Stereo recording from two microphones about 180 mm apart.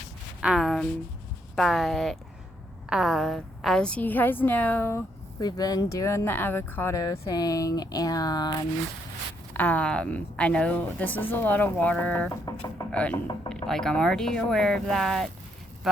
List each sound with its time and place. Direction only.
0.4 s a woman's voice: centre (ahead or behind); by 8.5 s 20° left (ahead or behind)
9.5 s a woman's voice: 10° left (ahead or behind)
12.3 s speech: 20° left (ahead or behind)
12.9 s speech: 5° left (ahead or behind)